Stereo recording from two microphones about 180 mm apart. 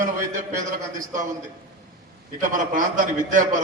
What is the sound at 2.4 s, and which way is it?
A man's voice, 45° right (ahead or behind).